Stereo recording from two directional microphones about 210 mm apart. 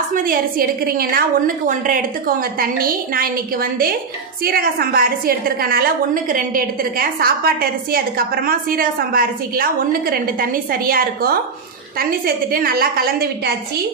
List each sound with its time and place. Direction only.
0.1 s a woman's voice: 45° right (ahead or behind)
4.5 s a woman's voice: 45° right (ahead or behind)